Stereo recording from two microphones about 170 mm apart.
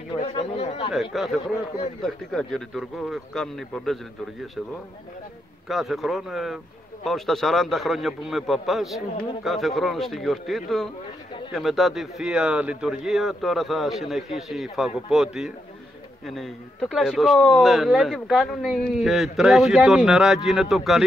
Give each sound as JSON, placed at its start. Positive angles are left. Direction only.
{"t": 0.2, "sound": "speech", "side_deg": 40}
{"t": 1.1, "sound": "speech", "side_deg": 0}
{"t": 5.7, "sound": "speech", "side_deg": 0}